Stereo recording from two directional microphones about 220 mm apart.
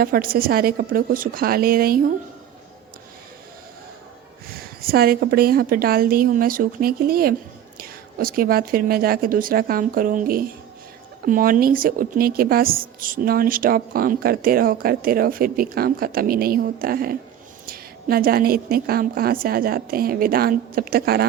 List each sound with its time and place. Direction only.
0.0 s speech: 40° right (ahead or behind)
4.4 s a woman's voice: 45° right (ahead or behind)